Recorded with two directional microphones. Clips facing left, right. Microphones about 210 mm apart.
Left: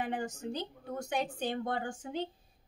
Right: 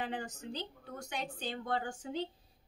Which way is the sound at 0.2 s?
50° left (ahead or behind).